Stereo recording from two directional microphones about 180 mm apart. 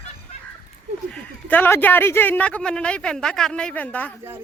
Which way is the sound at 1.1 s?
10° left (ahead or behind).